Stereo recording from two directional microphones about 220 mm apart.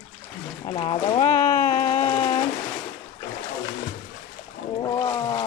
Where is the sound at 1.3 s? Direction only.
15° left (ahead or behind).